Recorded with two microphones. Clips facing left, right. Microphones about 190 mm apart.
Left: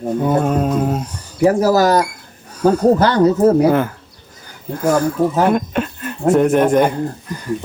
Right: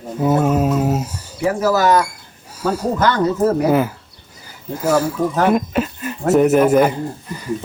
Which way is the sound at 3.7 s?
5° right (ahead or behind).